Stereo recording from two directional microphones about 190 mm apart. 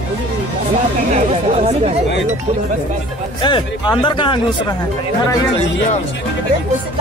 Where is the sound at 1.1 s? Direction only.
35° right (ahead or behind).